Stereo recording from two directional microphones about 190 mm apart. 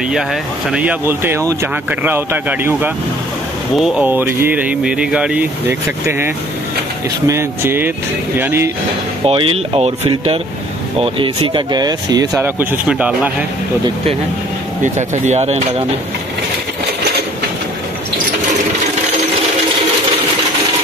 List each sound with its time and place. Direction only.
0.1 s speech: centre (ahead or behind)
9.2 s a man's voice: 30° right (ahead or behind); by 13.3 s 5° right (ahead or behind)
14.8 s speech: 40° right (ahead or behind)